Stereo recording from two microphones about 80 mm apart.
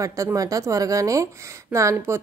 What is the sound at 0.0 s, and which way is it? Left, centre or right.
Speech, right.